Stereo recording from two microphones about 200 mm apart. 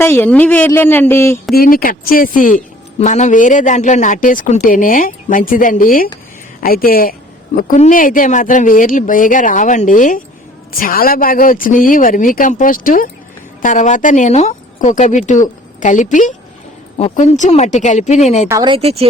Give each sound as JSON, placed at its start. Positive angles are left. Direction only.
{"t": 0.0, "sound": "speech", "side_deg": 10}
{"t": 1.5, "sound": "a woman's voice", "side_deg": 45}
{"t": 18.4, "sound": "speech", "side_deg": -20}